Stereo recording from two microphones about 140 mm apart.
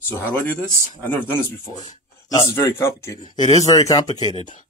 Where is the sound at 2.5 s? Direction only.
20° left (ahead or behind).